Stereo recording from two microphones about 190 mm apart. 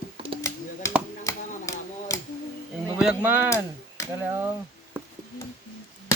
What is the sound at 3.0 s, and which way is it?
Speech, 5° right (ahead or behind).